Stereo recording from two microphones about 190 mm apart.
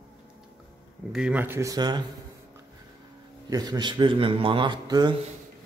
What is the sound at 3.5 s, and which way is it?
A man's voice, 20° right (ahead or behind).